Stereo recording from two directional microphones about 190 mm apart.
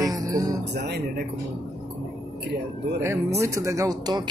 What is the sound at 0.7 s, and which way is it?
Speech, 60° right (ahead or behind).